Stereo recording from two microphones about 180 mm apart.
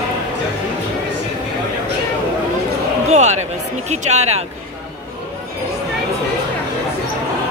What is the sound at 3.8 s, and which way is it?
Music, 40° right (ahead or behind).